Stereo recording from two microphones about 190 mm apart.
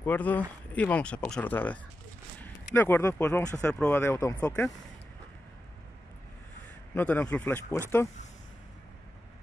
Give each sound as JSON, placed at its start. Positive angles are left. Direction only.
{"t": 0.0, "sound": "speech", "side_deg": 10}
{"t": 7.0, "sound": "speech", "side_deg": 10}